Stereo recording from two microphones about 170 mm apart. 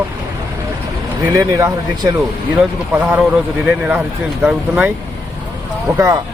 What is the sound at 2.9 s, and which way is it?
A man's voice, 10° right (ahead or behind).